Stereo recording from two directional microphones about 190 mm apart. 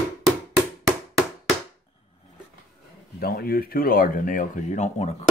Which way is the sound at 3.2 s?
50° left (ahead or behind).